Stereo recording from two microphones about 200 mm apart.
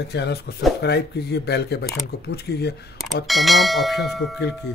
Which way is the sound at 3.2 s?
Centre (ahead or behind).